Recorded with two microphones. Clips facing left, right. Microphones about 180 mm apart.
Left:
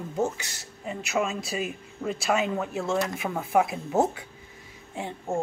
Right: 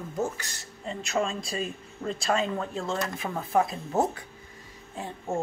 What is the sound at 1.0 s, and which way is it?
Speech, 5° left (ahead or behind).